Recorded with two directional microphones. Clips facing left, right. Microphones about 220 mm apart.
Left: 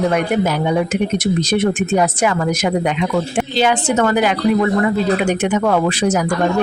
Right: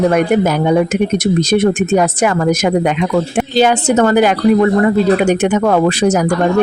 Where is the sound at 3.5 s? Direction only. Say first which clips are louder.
Right 5 dB; 40° right (ahead or behind).